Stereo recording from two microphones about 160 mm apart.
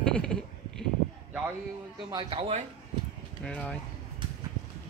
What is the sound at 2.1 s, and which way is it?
Speech, 30° right (ahead or behind).